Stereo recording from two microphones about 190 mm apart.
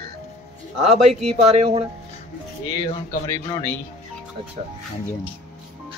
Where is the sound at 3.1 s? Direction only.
15° left (ahead or behind).